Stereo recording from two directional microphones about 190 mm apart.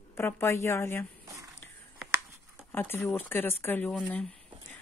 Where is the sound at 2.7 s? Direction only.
10° left (ahead or behind).